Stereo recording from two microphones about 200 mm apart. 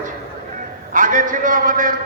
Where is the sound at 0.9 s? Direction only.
40° right (ahead or behind).